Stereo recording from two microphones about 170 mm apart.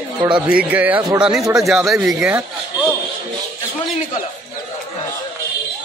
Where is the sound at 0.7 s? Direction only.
10° right (ahead or behind).